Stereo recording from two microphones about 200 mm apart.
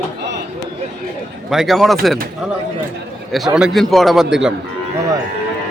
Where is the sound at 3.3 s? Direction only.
5° right (ahead or behind).